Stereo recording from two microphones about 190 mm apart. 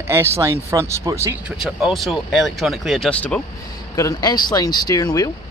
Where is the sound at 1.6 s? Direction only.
Centre (ahead or behind).